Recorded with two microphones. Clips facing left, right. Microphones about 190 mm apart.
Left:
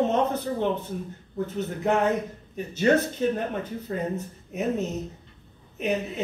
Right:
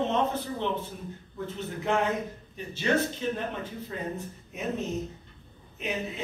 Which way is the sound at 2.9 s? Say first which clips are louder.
Left 5 dB; 45° left (ahead or behind).